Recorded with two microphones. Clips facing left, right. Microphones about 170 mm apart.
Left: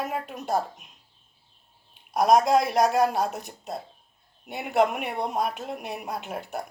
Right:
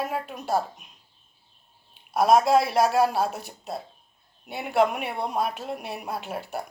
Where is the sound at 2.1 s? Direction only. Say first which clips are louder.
Right 1 dB; 15° left (ahead or behind).